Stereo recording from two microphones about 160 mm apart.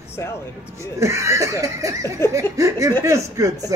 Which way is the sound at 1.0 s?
20° right (ahead or behind).